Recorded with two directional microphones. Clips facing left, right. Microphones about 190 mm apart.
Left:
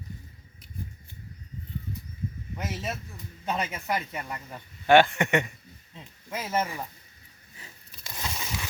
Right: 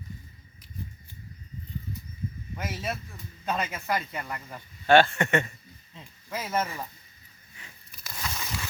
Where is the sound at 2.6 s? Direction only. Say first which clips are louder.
Even; 15° left (ahead or behind).